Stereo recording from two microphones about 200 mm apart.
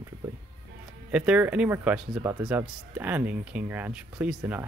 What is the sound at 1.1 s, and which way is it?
Speech, 5° right (ahead or behind).